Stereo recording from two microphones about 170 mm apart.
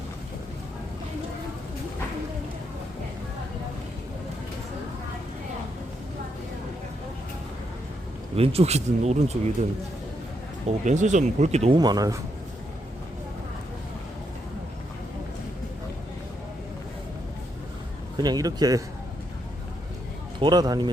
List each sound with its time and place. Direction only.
8.4 s speech: 35° right (ahead or behind)
10.7 s speech: 45° right (ahead or behind)
11.8 s speech: 25° right (ahead or behind)
18.2 s speech: 25° right (ahead or behind)
20.4 s speech: 25° right (ahead or behind)